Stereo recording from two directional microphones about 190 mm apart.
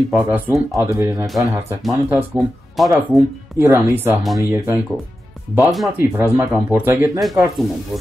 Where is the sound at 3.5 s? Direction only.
10° right (ahead or behind).